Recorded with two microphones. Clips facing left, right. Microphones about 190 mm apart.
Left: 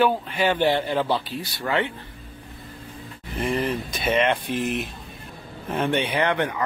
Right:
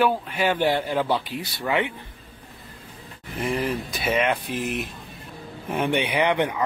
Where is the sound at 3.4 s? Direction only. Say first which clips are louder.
Left 1 dB; 10° right (ahead or behind).